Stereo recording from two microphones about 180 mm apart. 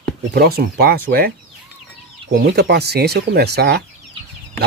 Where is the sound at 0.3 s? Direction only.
60° right (ahead or behind).